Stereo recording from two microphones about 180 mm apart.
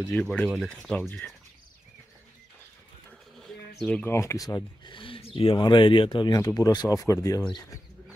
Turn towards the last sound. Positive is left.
turn(degrees=20)  # may be behind; listen again after turning